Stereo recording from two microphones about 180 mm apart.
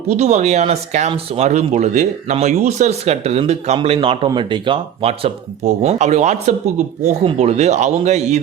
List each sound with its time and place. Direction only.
0.2 s speech: 40° right (ahead or behind)